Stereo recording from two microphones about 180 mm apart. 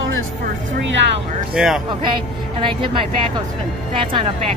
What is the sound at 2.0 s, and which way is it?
Speech, 25° right (ahead or behind).